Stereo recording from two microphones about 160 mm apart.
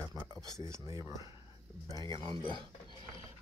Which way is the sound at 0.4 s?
20° right (ahead or behind).